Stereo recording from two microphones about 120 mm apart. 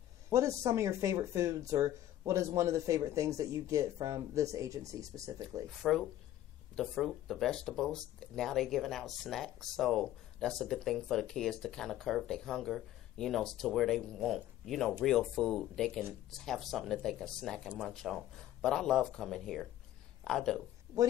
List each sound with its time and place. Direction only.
0.3 s speech: 25° right (ahead or behind)
5.8 s speech: centre (ahead or behind)